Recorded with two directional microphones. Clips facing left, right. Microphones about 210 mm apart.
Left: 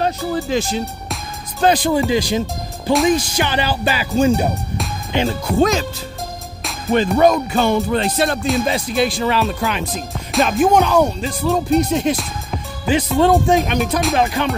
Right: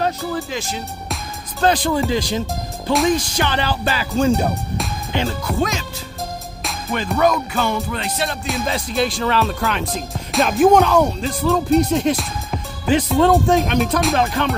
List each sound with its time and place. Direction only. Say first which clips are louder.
0.0 s speech: left 2 dB; 30° left (ahead or behind)
1.6 s music: left 2 dB; 15° left (ahead or behind)
2.4 s speech: left 2 dB; centre (ahead or behind)
3.3 s music: left 1 dB; 10° left (ahead or behind)
5.6 s speech: left 8 dB; 35° left (ahead or behind)
6.9 s music: left 5 dB; 30° left (ahead or behind)
8.6 s speech: left 3 dB; 15° left (ahead or behind)
14.1 s music: left 1 dB; 10° left (ahead or behind)